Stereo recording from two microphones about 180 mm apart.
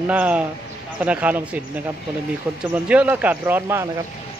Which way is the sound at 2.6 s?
5° right (ahead or behind).